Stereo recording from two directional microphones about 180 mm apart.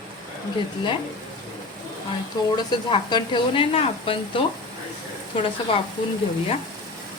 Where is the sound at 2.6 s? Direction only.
25° left (ahead or behind).